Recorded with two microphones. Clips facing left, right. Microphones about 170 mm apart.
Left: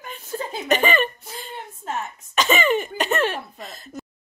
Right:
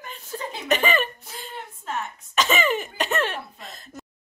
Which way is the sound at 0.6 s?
Centre (ahead or behind).